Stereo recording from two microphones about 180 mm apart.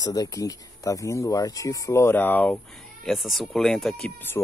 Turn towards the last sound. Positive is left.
turn(degrees=5)  # may be behind; listen again after turning